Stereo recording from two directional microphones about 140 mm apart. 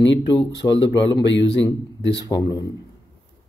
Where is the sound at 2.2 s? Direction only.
30° left (ahead or behind).